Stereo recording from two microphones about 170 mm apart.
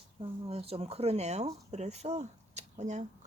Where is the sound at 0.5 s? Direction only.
35° right (ahead or behind).